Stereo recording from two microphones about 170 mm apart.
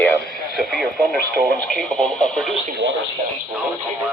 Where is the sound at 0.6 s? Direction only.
Centre (ahead or behind).